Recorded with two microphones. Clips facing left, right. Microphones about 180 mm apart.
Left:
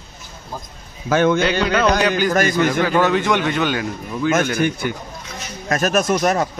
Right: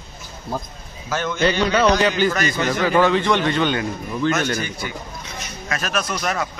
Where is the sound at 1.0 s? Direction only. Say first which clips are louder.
Left 9 dB; 55° left (ahead or behind).